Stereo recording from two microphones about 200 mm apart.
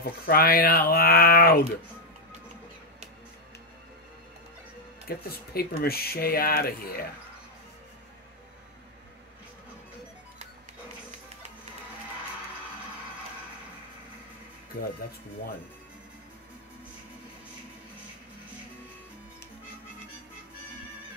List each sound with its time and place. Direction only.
0.3 s speech: 50° left (ahead or behind)
5.0 s speech: 50° left (ahead or behind)